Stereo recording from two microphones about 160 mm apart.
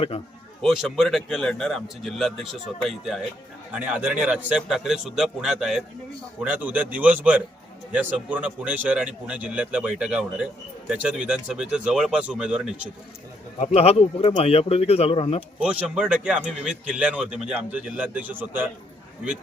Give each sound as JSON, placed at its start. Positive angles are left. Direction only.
{"t": 0.6, "sound": "speech", "side_deg": 0}
{"t": 13.6, "sound": "speech", "side_deg": 40}
{"t": 15.6, "sound": "speech", "side_deg": -10}